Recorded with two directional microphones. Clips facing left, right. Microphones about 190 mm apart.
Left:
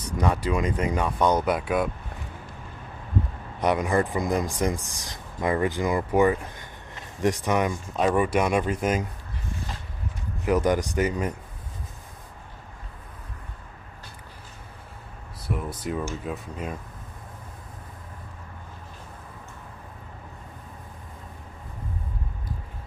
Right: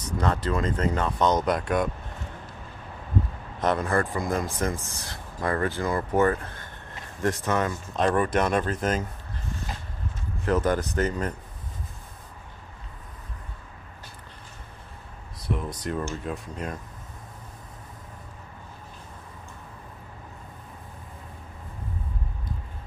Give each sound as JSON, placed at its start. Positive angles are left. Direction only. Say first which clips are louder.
{"t": 0.2, "sound": "speech", "louder": "left 1 dB", "side_deg": 10}
{"t": 3.6, "sound": "speech", "louder": "left 2 dB", "side_deg": 15}
{"t": 10.4, "sound": "speech", "louder": "left 2 dB", "side_deg": 15}
{"t": 15.4, "sound": "speech", "louder": "even", "side_deg": 5}